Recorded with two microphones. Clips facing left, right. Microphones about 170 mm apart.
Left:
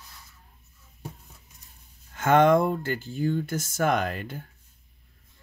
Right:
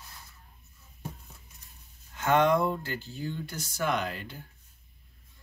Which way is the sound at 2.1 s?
50° left (ahead or behind).